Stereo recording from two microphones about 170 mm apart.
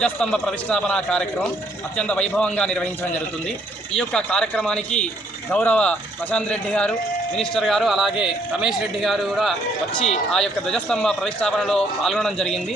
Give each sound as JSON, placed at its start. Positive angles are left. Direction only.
{"t": 0.0, "sound": "a man's voice", "side_deg": 5}